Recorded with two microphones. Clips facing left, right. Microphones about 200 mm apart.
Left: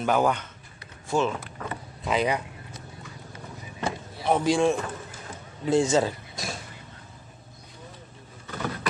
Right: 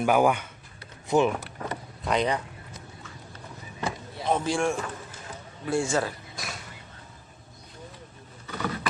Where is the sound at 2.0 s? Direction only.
5° left (ahead or behind).